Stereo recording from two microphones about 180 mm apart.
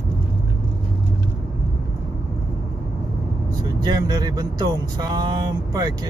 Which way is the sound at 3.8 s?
20° right (ahead or behind).